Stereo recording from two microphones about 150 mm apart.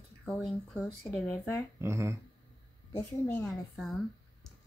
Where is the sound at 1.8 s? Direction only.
20° right (ahead or behind).